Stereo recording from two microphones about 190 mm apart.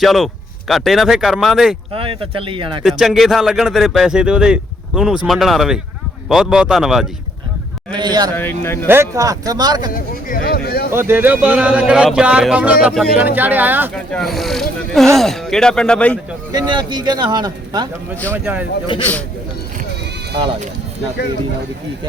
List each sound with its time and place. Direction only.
0.0 s speech: centre (ahead or behind)
1.9 s a man's voice: 30° right (ahead or behind)
2.8 s speech: centre (ahead or behind)
7.9 s a man's voice: 20° right (ahead or behind)
8.4 s speech: 10° left (ahead or behind)
8.9 s a man's voice: 15° right (ahead or behind)
9.9 s a sound: 45° left (ahead or behind)
10.9 s speech: 10° right (ahead or behind)
13.9 s speech: 5° left (ahead or behind)
16.5 s a man's voice: 20° right (ahead or behind)
18.3 s speech: 10° right (ahead or behind)
18.9 s a man's voice: 25° left (ahead or behind)